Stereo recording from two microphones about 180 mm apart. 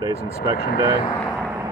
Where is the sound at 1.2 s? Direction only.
Centre (ahead or behind).